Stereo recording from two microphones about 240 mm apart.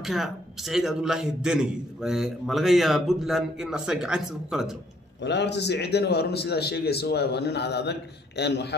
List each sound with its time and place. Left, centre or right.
0.0 s a man's voice: centre
5.2 s a man's voice: left